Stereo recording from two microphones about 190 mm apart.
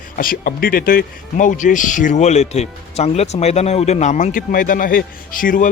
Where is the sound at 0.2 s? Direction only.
50° left (ahead or behind).